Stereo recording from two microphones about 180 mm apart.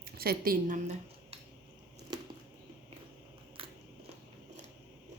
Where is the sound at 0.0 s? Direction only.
55° right (ahead or behind).